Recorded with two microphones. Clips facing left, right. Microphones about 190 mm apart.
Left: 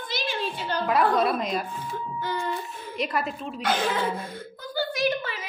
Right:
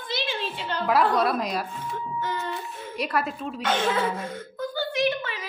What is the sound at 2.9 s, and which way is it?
Speech, centre (ahead or behind).